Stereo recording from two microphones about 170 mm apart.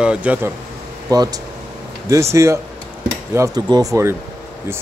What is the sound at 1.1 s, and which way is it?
Speech, 20° right (ahead or behind).